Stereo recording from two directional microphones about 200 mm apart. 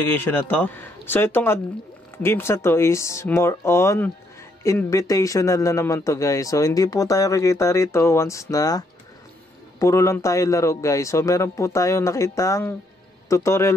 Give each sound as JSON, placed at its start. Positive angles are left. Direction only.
{"t": 0.0, "sound": "a man's voice", "side_deg": 10}